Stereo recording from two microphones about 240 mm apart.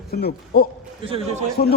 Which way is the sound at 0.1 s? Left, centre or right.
Left.